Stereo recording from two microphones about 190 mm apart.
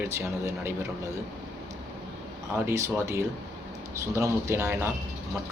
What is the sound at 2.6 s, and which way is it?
Speech, 15° right (ahead or behind).